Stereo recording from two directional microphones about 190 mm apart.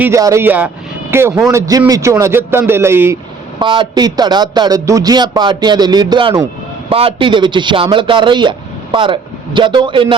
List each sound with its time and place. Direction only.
0.0 s a man's voice: 15° right (ahead or behind)
3.6 s a man's voice: 25° right (ahead or behind)